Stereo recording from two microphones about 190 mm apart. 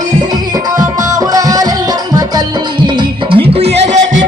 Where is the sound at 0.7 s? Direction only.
20° right (ahead or behind).